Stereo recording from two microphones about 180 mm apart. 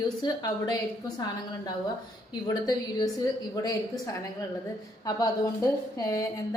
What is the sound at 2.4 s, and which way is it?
Speech, 20° left (ahead or behind).